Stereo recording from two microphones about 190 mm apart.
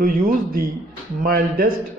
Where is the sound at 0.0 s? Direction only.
50° right (ahead or behind).